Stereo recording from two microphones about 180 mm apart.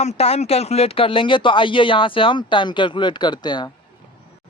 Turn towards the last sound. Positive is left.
turn(degrees=25)  # may be behind; listen again after turning